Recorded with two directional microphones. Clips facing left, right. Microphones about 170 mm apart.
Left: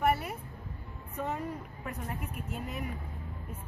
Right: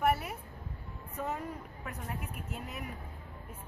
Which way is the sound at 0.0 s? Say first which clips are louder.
Left 1 dB; centre (ahead or behind).